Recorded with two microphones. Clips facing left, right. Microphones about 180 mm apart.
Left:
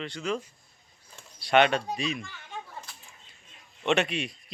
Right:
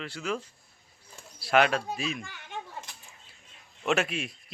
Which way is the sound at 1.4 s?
Centre (ahead or behind).